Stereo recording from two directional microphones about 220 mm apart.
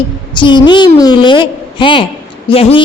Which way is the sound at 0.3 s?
20° left (ahead or behind).